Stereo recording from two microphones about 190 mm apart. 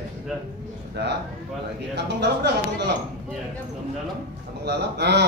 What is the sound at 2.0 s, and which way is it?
Speech, 65° right (ahead or behind).